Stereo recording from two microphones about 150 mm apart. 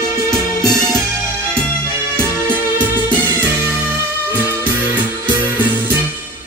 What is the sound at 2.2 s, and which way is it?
Music, 10° right (ahead or behind).